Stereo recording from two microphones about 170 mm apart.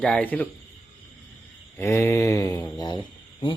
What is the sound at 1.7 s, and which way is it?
Mantra, 15° left (ahead or behind).